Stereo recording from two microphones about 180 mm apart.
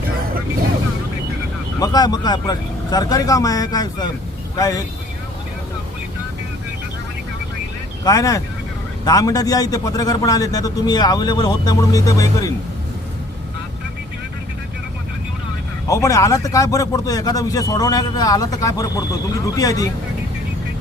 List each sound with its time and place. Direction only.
1.8 s a man's voice: 20° left (ahead or behind)
8.0 s a man's voice: 20° left (ahead or behind)
15.9 s a man's voice: 20° left (ahead or behind)